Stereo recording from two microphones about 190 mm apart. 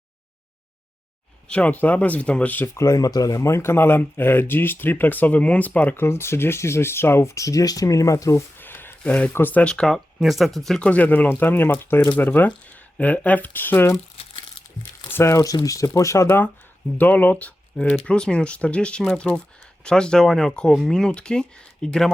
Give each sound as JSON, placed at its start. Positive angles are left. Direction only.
{"t": 1.5, "sound": "speech", "side_deg": 5}
{"t": 14.2, "sound": "crumpling", "side_deg": 30}
{"t": 15.1, "sound": "speech", "side_deg": 15}